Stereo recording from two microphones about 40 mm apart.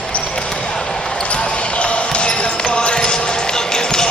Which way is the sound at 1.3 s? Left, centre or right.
Left.